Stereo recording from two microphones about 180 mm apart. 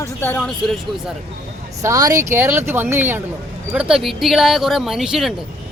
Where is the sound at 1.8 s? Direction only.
20° right (ahead or behind).